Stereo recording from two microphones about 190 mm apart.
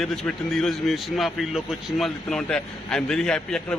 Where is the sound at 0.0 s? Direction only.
Centre (ahead or behind).